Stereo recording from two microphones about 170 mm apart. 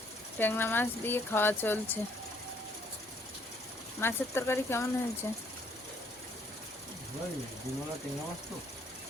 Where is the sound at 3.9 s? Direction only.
15° left (ahead or behind).